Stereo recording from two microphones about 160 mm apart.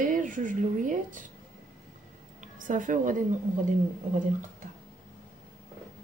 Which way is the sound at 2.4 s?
55° right (ahead or behind).